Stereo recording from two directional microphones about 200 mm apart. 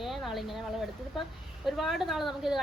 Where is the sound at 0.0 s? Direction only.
Centre (ahead or behind).